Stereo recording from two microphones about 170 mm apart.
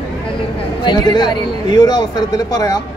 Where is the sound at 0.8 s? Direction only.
25° left (ahead or behind).